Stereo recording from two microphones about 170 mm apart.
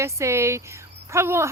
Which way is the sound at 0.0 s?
15° right (ahead or behind).